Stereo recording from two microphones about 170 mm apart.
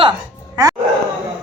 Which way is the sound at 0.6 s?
20° right (ahead or behind).